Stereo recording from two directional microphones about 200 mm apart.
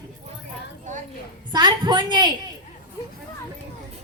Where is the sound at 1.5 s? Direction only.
20° right (ahead or behind).